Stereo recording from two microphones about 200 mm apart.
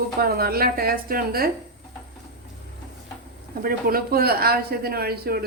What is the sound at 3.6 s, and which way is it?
Speech, 50° right (ahead or behind).